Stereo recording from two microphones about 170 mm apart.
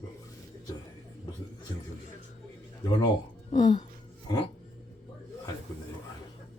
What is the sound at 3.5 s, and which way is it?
Speech, 45° left (ahead or behind).